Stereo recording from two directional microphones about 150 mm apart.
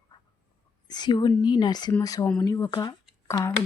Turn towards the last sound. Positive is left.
turn(degrees=20)  # may be behind; listen again after turning